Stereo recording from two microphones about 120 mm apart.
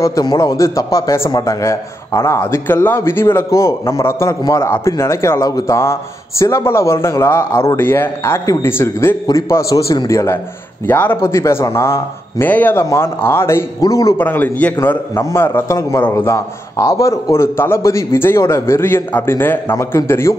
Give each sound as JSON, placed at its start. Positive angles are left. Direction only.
{"t": 0.0, "sound": "a man's voice", "side_deg": 30}
{"t": 14.1, "sound": "a man's voice", "side_deg": 15}